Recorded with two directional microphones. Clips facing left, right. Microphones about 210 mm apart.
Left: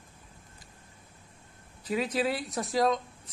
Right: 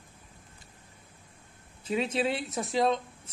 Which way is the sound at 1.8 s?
25° right (ahead or behind).